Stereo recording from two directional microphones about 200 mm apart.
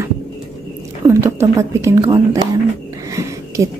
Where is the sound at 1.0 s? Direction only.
15° right (ahead or behind).